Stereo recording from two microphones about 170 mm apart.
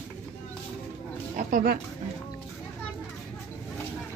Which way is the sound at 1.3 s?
55° right (ahead or behind).